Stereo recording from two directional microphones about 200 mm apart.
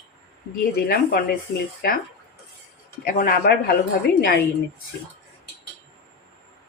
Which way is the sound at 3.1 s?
45° left (ahead or behind).